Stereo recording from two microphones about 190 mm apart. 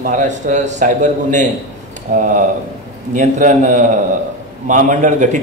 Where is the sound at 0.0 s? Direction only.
40° right (ahead or behind).